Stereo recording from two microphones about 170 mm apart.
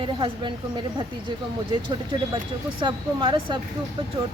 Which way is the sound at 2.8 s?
30° right (ahead or behind).